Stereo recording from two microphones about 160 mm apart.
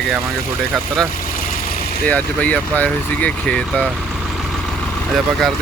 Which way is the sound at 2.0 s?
10° left (ahead or behind).